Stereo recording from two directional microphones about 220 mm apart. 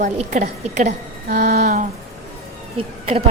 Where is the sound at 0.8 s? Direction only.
45° right (ahead or behind); by 3.2 s 25° right (ahead or behind).